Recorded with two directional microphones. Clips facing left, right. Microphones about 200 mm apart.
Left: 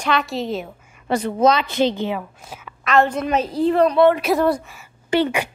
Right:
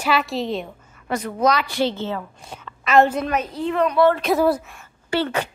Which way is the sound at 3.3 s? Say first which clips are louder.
Left 5 dB; 35° left (ahead or behind).